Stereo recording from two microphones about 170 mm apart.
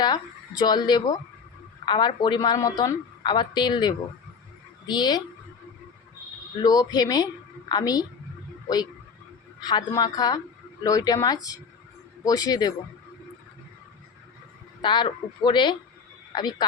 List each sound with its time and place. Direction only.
0.0 s a woman's voice: 25° left (ahead or behind)
6.6 s a woman's voice: 25° left (ahead or behind)
9.6 s a woman's voice: 25° left (ahead or behind)
14.8 s a woman's voice: 25° left (ahead or behind)